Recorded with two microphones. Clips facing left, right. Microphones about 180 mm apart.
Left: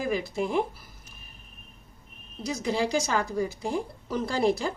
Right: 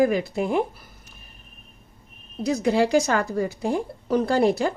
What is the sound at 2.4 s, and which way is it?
A woman's voice, 60° right (ahead or behind).